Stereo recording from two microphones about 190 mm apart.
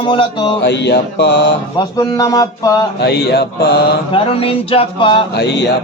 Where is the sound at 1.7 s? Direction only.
20° left (ahead or behind).